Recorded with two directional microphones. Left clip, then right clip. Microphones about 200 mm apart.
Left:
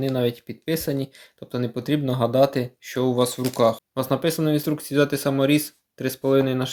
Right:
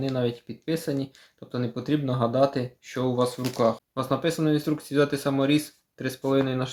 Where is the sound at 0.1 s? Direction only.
30° left (ahead or behind).